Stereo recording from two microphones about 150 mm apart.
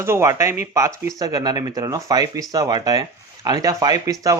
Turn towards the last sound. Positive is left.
turn(degrees=-25)  # may be behind; listen again after turning